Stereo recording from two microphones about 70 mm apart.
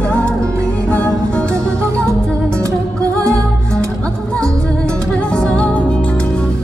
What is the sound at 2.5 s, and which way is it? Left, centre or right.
Music, right.